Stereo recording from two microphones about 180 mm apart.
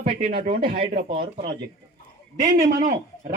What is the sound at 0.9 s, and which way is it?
A man's voice, 60° right (ahead or behind).